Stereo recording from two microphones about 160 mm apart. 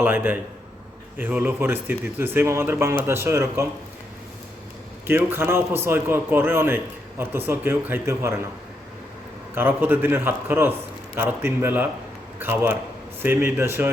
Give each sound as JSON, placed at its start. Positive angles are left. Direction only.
{"t": 0.0, "sound": "a man's voice", "side_deg": -10}
{"t": 5.0, "sound": "a man's voice", "side_deg": -15}
{"t": 9.6, "sound": "a man's voice", "side_deg": -10}